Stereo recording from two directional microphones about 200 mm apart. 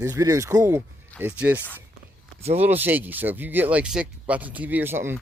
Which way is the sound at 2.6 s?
10° right (ahead or behind).